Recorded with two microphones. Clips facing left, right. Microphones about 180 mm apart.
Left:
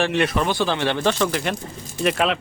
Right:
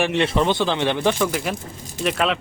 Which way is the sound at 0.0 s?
20° right (ahead or behind).